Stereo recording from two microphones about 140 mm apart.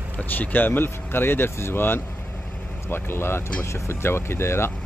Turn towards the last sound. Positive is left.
turn(degrees=20)  # may be behind; listen again after turning